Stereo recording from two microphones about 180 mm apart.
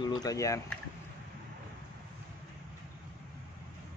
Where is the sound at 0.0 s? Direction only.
20° left (ahead or behind).